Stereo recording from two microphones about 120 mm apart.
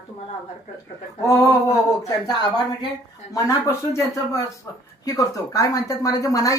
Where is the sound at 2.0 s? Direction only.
35° left (ahead or behind).